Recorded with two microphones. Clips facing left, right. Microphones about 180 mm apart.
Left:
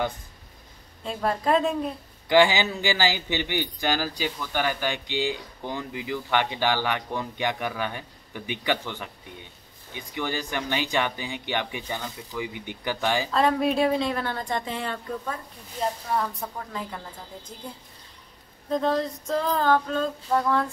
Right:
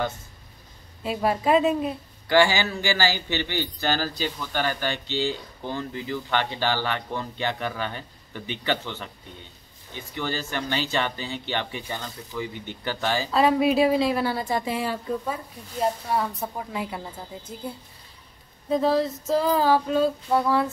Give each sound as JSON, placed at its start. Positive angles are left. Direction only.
{"t": 1.0, "sound": "a woman's voice", "side_deg": -5}
{"t": 2.2, "sound": "speech", "side_deg": 15}
{"t": 13.3, "sound": "a woman's voice", "side_deg": -5}
{"t": 18.7, "sound": "a woman's voice", "side_deg": -5}